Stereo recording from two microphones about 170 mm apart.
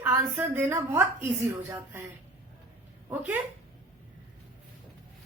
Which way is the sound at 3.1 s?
10° right (ahead or behind).